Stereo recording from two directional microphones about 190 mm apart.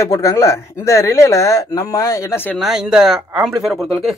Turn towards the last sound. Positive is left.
turn(degrees=0)  # may be behind; listen again after turning